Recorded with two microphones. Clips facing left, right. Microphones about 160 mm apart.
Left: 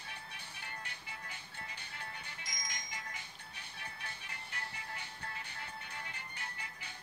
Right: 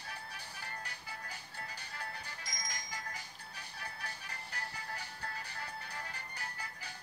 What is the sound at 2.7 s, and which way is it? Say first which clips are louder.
Music: right 2 dB; 40° right (ahead or behind).